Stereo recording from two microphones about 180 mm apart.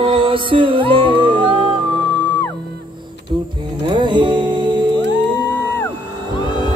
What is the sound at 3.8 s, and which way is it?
Music, 25° right (ahead or behind).